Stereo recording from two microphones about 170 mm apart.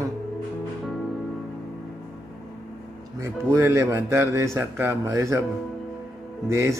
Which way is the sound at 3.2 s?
15° right (ahead or behind).